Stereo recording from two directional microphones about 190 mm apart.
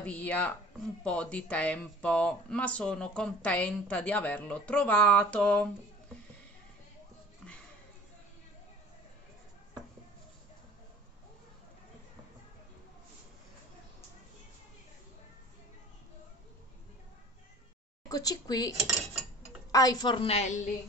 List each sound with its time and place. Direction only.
0.0 s speech: 10° left (ahead or behind)
18.0 s a woman's voice: 20° left (ahead or behind); by 20.6 s 35° left (ahead or behind)